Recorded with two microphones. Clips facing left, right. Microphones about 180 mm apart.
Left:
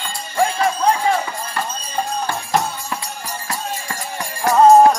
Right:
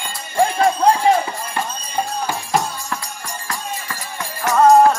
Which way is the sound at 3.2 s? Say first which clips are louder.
Left 2 dB; 35° left (ahead or behind).